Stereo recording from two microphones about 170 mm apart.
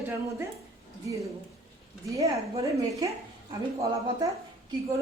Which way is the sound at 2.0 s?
20° right (ahead or behind).